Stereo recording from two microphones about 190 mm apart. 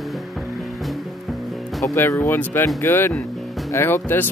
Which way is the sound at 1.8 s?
15° left (ahead or behind).